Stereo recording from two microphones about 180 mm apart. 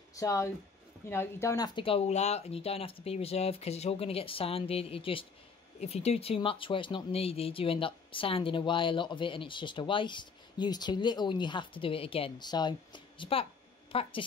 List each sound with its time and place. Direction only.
0.1 s speech: 15° left (ahead or behind)
1.8 s speech: 30° left (ahead or behind)